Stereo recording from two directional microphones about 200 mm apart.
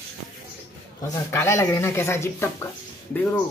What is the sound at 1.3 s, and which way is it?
Speech, 15° left (ahead or behind).